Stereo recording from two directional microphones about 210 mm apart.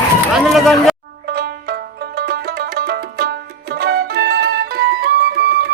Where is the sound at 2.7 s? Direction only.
50° right (ahead or behind).